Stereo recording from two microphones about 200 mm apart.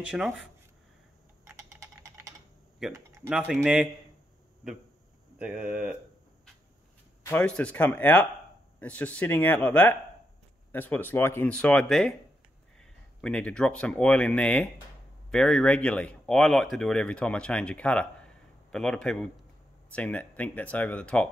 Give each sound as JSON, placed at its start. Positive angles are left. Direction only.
{"t": 0.0, "sound": "speech", "side_deg": -5}
{"t": 1.5, "sound": "a sound", "side_deg": -15}
{"t": 2.8, "sound": "speech", "side_deg": -5}
{"t": 5.4, "sound": "speech", "side_deg": -5}
{"t": 7.2, "sound": "speech", "side_deg": 5}